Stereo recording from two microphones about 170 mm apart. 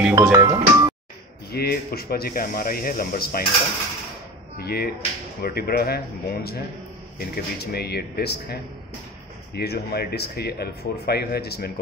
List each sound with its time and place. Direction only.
0.1 s speech: 20° right (ahead or behind)
1.5 s speech: 65° left (ahead or behind)
4.6 s speech: 70° left (ahead or behind)